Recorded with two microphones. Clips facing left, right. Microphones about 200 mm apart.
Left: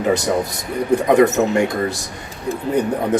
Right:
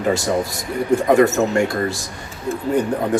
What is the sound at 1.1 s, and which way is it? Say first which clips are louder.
Speech: left 1 dB; 20° left (ahead or behind).